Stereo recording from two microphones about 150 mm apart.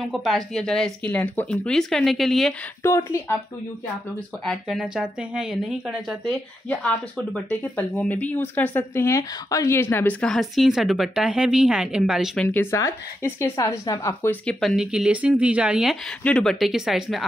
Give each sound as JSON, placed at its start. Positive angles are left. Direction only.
{"t": 0.0, "sound": "speech", "side_deg": 0}
{"t": 2.8, "sound": "speech", "side_deg": 20}
{"t": 4.5, "sound": "speech", "side_deg": 0}
{"t": 12.4, "sound": "speech", "side_deg": 15}